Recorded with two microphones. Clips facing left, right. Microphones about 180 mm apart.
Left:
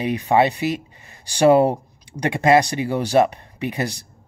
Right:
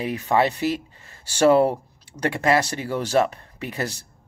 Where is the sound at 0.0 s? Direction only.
15° left (ahead or behind).